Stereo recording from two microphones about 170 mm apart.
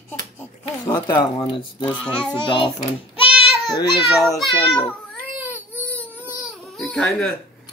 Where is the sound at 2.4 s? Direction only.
30° left (ahead or behind).